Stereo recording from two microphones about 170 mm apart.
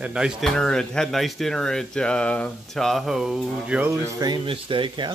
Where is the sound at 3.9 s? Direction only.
20° right (ahead or behind).